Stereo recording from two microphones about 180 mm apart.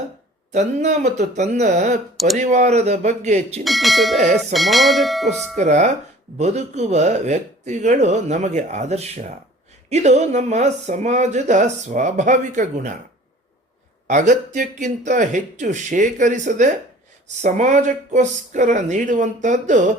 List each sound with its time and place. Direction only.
0.5 s speech: 40° right (ahead or behind)
2.1 s speech: centre (ahead or behind)
2.4 s speech: 40° right (ahead or behind)
3.6 s bell: centre (ahead or behind)
5.5 s speech: 40° right (ahead or behind)
14.1 s speech: 40° right (ahead or behind)